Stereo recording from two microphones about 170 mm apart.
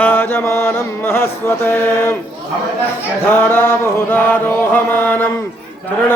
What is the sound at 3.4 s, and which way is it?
Chant, 10° left (ahead or behind).